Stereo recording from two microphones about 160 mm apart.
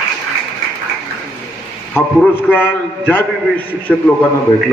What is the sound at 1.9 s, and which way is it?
A man's voice, 10° left (ahead or behind).